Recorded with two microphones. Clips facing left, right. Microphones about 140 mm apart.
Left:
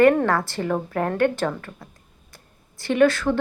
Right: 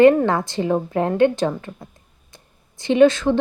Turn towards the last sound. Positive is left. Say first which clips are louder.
# right 4 dB
turn(degrees=-20)  # may be behind; listen again after turning